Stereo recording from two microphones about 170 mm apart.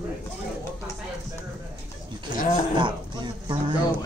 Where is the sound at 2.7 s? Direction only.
30° right (ahead or behind).